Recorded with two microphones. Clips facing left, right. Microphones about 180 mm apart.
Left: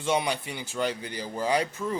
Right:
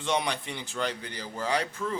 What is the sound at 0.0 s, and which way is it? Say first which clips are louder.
Speech: left 2 dB; 5° left (ahead or behind).